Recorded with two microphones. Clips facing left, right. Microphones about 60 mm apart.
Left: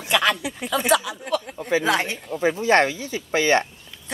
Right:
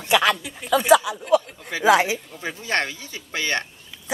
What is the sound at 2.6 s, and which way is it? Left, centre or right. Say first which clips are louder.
Speech: left 5 dB; left.